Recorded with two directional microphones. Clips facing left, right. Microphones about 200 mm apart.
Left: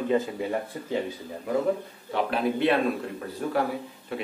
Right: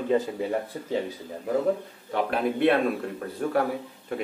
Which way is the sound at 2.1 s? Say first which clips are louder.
Even; 55° right (ahead or behind).